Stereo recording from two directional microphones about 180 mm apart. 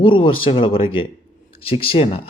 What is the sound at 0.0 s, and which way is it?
Speech, 30° left (ahead or behind).